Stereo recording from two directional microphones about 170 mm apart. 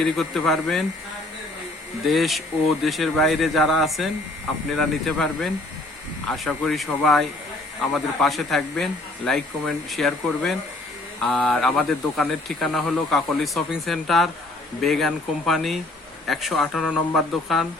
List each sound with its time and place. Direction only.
0.0 s speech: centre (ahead or behind)
2.0 s speech: centre (ahead or behind)